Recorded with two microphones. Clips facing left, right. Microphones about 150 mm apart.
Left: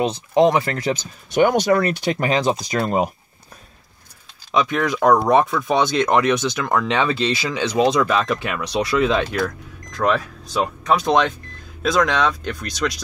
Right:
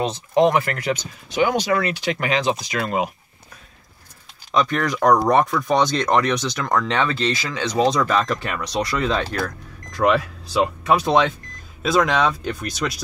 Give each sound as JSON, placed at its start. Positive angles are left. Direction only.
{"t": 0.0, "sound": "speech", "side_deg": 20}
{"t": 1.3, "sound": "speech", "side_deg": 50}
{"t": 4.5, "sound": "speech", "side_deg": 10}
{"t": 9.4, "sound": "speech", "side_deg": -5}